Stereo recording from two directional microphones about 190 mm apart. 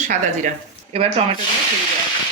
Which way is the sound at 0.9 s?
30° right (ahead or behind).